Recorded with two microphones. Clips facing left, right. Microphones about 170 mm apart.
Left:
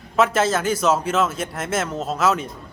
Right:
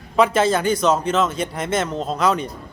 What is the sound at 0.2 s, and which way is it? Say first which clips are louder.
A man's voice: right 2 dB; centre (ahead or behind).